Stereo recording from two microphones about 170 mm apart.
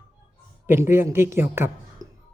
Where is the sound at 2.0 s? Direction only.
20° right (ahead or behind).